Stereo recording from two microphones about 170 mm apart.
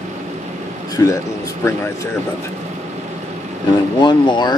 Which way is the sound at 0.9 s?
20° left (ahead or behind).